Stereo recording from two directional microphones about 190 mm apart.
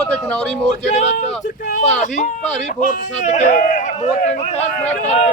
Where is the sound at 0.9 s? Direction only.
35° left (ahead or behind).